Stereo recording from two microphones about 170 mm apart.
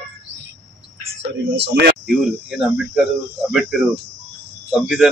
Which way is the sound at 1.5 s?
85° right.